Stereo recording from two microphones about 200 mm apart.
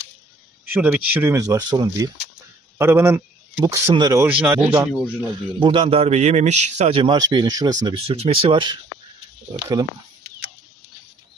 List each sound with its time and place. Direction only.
0.6 s a man's voice: 10° right (ahead or behind)
5.5 s a man's voice: 25° right (ahead or behind)